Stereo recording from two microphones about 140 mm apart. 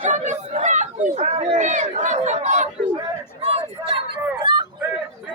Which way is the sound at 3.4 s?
45° right (ahead or behind).